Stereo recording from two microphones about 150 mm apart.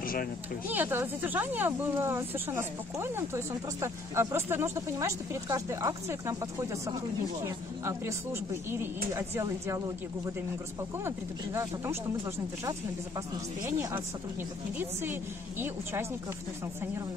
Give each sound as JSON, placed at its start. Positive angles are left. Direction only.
{"t": 0.0, "sound": "a sound", "side_deg": 70}
{"t": 0.7, "sound": "speech", "side_deg": -15}
{"t": 11.1, "sound": "speech", "side_deg": -15}
{"t": 13.7, "sound": "speech", "side_deg": -20}